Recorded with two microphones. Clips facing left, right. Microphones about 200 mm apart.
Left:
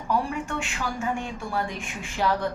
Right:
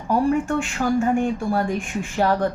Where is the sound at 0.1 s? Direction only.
50° right (ahead or behind).